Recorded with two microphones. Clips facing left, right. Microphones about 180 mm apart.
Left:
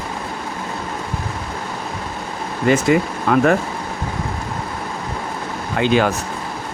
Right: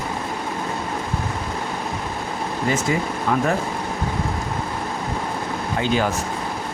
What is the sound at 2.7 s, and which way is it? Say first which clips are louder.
Speech: left 8 dB; 70° left (ahead or behind).